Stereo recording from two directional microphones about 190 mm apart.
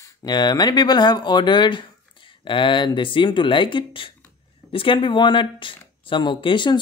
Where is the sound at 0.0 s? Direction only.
20° left (ahead or behind).